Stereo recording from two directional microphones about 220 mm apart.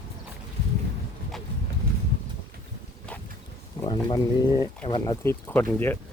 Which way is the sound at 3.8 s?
20° left (ahead or behind).